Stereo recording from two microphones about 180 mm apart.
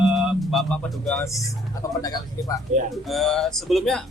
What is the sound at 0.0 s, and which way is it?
Music, 5° right (ahead or behind).